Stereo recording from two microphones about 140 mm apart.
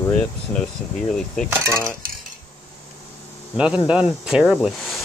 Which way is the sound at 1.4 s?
20° right (ahead or behind).